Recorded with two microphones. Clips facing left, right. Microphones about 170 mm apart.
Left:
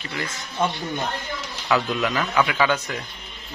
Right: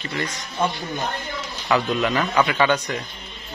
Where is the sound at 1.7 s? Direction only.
Centre (ahead or behind).